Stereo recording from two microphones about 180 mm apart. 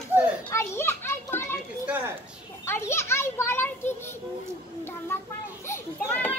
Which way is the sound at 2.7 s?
15° left (ahead or behind).